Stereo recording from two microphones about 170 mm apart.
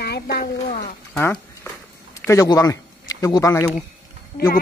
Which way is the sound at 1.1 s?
15° left (ahead or behind).